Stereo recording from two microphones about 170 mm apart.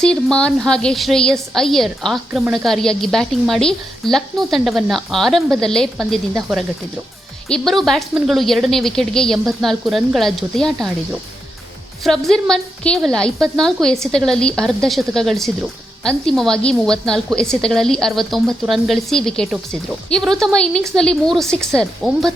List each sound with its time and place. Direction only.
0.0 s speech: 5° left (ahead or behind)